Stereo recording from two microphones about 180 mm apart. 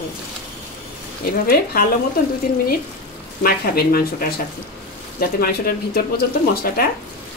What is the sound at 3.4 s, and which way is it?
Speech, 55° left (ahead or behind).